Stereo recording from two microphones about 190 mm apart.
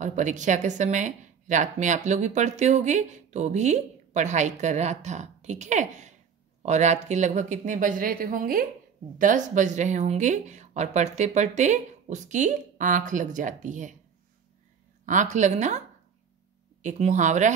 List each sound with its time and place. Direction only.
0.0 s a woman's voice: 40° right (ahead or behind)
15.0 s a woman's voice: 40° right (ahead or behind)
16.8 s a woman's voice: 40° right (ahead or behind)